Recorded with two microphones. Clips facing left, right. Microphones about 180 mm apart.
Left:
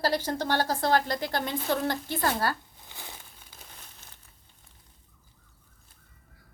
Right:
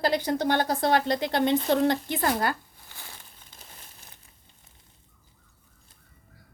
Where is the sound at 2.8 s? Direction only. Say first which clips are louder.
Left 3 dB; 20° left (ahead or behind).